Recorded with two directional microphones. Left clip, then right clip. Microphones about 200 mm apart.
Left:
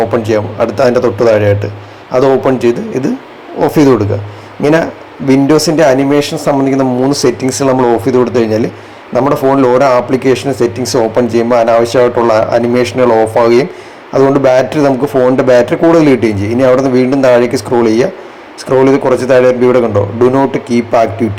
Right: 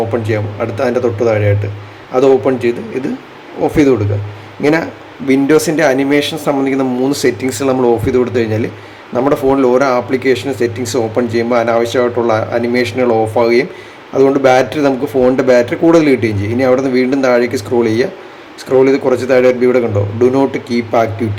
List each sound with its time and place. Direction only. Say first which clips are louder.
0.2 s a man's voice: left 6 dB; 15° left (ahead or behind)